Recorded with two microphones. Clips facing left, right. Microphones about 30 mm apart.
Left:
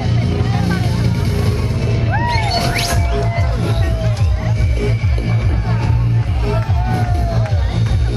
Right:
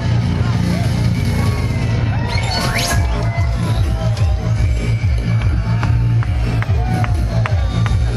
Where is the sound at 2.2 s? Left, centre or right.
Centre.